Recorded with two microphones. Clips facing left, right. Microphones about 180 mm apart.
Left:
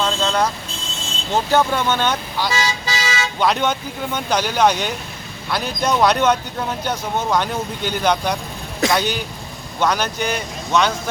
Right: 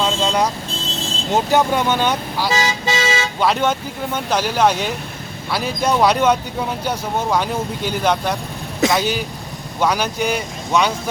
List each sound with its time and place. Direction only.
0.0 s vehicle: 10° right (ahead or behind)
1.3 s speech: 15° right (ahead or behind)
2.8 s toot: 30° right (ahead or behind)
3.4 s speech: 5° right (ahead or behind)